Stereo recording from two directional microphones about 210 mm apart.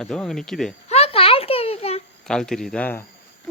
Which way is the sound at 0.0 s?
5° left (ahead or behind).